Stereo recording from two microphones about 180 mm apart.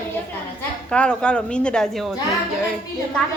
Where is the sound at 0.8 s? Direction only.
5° left (ahead or behind).